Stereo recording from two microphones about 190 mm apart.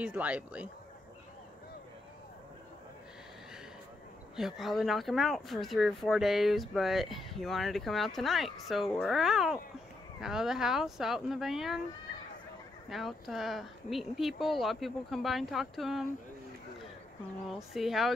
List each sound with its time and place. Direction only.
0.0 s speech: 10° right (ahead or behind)
4.4 s speech: centre (ahead or behind)
12.9 s speech: centre (ahead or behind)
17.6 s speech: centre (ahead or behind)